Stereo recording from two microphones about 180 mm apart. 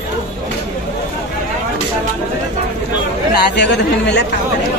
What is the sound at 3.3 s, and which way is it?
Speech, 70° left (ahead or behind).